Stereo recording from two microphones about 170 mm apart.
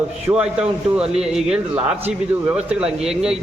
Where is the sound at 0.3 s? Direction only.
15° right (ahead or behind).